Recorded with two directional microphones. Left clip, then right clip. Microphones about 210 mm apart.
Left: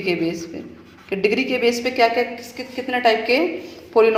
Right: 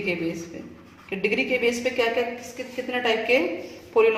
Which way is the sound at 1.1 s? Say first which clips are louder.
Left 4 dB; 30° left (ahead or behind).